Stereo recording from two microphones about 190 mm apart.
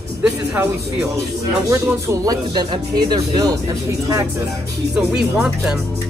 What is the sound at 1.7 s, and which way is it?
Speech, 15° right (ahead or behind).